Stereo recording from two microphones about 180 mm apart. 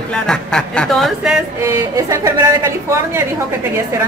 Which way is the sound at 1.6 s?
20° right (ahead or behind).